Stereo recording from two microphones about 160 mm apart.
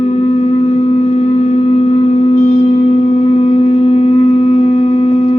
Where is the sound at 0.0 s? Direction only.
40° left (ahead or behind).